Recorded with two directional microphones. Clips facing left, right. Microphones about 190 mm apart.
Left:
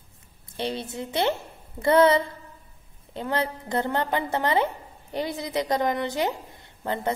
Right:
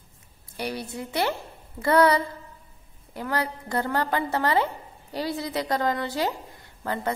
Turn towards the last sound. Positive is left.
turn(degrees=20)  # may be behind; listen again after turning